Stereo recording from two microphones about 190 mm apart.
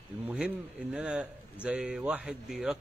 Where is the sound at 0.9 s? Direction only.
5° right (ahead or behind).